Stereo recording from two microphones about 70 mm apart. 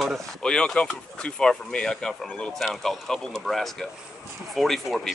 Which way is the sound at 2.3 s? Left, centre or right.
Centre.